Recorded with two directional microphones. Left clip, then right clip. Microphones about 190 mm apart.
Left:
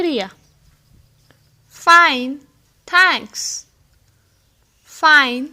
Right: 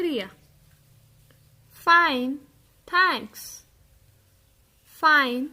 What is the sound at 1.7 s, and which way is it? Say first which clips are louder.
A woman's voice: left 8 dB; 15° left (ahead or behind).